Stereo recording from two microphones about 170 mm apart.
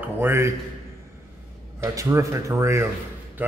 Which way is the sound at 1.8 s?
20° right (ahead or behind).